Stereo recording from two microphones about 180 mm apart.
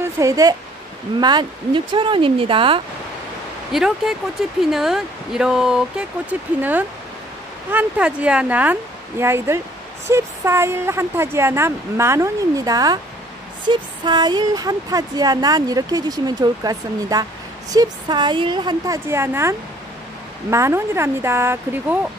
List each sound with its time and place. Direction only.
0.2 s speech: 20° right (ahead or behind)
3.7 s speech: centre (ahead or behind)